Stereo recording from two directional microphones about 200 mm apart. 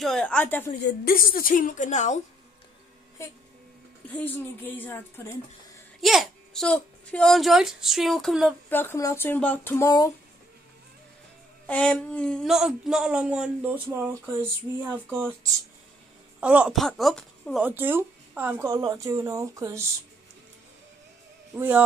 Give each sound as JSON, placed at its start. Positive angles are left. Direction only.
{"t": 0.0, "sound": "speech", "side_deg": 5}
{"t": 1.0, "sound": "a woman's voice", "side_deg": 45}
{"t": 4.1, "sound": "speech", "side_deg": 10}
{"t": 5.9, "sound": "speech", "side_deg": 0}
{"t": 8.6, "sound": "speech", "side_deg": 10}
{"t": 11.6, "sound": "speech", "side_deg": 5}
{"t": 16.3, "sound": "speech", "side_deg": -5}
{"t": 17.6, "sound": "speech", "side_deg": -10}
{"t": 21.5, "sound": "speech", "side_deg": -10}